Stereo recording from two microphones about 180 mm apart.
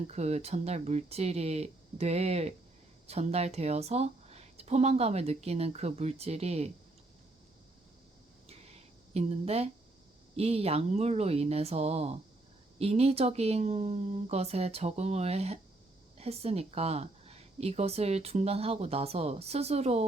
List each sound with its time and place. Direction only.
0.1 s a woman's voice: 35° right (ahead or behind)
8.4 s a sound: 35° right (ahead or behind)
10.3 s a woman's voice: 35° right (ahead or behind)